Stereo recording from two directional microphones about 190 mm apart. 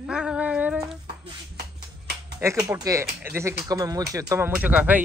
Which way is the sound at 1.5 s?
60° right (ahead or behind).